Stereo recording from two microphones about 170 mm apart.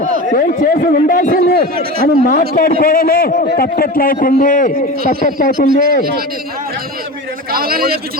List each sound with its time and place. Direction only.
0.3 s a man's voice: 55° left (ahead or behind)
2.6 s a man's voice: 60° left (ahead or behind)
7.5 s a man's voice: 60° right (ahead or behind)